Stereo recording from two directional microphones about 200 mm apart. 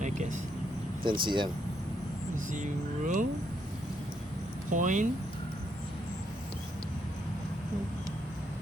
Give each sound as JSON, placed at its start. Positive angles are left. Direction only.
{"t": 0.0, "sound": "a sound", "side_deg": -40}
{"t": 1.0, "sound": "speech", "side_deg": -25}
{"t": 2.3, "sound": "speech", "side_deg": -40}
{"t": 4.7, "sound": "speech", "side_deg": -40}